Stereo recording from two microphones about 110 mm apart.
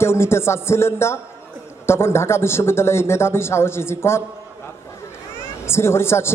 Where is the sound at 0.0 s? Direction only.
25° left (ahead or behind).